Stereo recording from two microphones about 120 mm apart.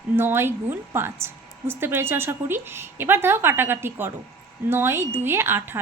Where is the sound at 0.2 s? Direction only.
20° right (ahead or behind).